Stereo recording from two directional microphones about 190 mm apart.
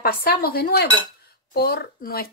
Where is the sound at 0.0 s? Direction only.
50° left (ahead or behind).